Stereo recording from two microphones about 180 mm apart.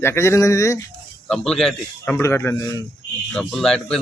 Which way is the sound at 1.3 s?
Centre (ahead or behind).